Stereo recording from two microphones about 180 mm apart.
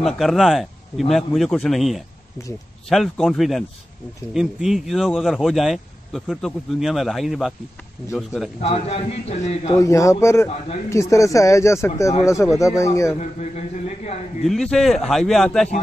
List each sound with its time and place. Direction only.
0.0 s speech: centre (ahead or behind)
8.5 s a man's voice: 35° left (ahead or behind)
9.8 s speech: 15° left (ahead or behind)
13.2 s a man's voice: 40° left (ahead or behind)
14.4 s speech: centre (ahead or behind)